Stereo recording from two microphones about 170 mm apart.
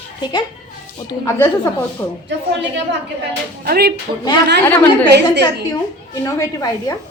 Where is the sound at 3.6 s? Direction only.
65° right (ahead or behind).